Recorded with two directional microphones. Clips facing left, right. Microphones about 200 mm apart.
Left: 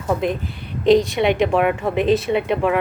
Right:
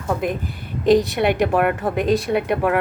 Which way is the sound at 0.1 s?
5° right (ahead or behind).